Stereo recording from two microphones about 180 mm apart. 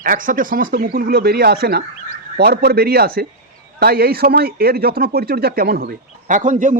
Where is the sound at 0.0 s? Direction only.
50° right (ahead or behind).